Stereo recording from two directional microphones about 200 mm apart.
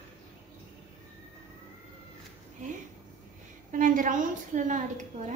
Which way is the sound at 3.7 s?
40° right (ahead or behind).